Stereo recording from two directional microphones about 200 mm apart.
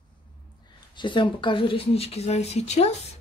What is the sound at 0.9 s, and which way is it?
Speech, 25° left (ahead or behind).